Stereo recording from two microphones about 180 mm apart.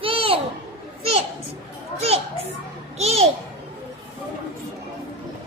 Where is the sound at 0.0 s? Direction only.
30° right (ahead or behind).